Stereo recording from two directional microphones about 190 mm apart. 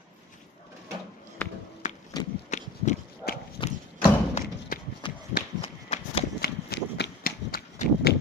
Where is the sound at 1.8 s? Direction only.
40° left (ahead or behind).